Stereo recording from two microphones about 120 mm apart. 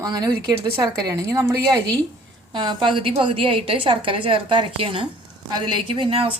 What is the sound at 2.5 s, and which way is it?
A woman's voice, 40° right (ahead or behind).